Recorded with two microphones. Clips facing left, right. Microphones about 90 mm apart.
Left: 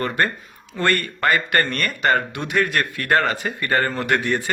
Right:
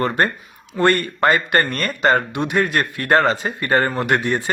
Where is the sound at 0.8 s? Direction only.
20° right (ahead or behind).